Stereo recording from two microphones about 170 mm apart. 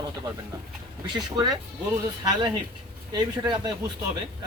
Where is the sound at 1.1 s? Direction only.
25° right (ahead or behind).